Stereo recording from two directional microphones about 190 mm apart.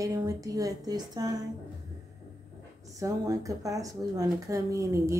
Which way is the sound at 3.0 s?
15° right (ahead or behind).